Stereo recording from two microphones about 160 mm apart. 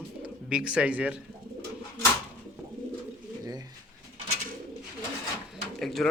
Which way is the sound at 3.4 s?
20° right (ahead or behind).